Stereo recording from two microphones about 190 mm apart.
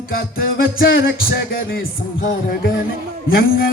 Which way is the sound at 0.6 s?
50° left (ahead or behind).